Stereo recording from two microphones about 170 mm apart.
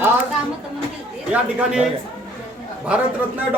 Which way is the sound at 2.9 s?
5° right (ahead or behind).